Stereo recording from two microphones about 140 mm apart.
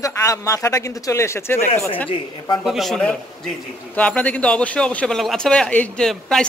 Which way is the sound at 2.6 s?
Centre (ahead or behind).